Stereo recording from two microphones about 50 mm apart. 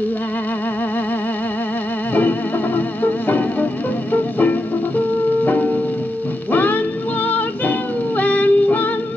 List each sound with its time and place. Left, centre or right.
2.1 s music: left